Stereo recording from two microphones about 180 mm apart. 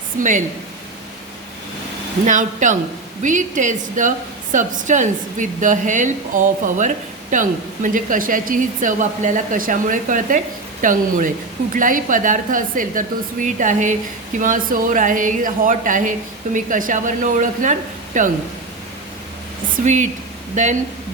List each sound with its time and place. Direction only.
0.2 s a woman's voice: 45° right (ahead or behind)
2.2 s a woman's voice: 45° right (ahead or behind)
19.7 s a woman's voice: 45° right (ahead or behind)